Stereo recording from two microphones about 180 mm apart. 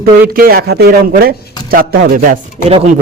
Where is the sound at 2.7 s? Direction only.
35° right (ahead or behind).